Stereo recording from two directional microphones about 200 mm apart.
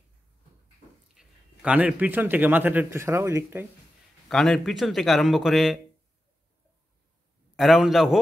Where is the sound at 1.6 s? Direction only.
5° right (ahead or behind).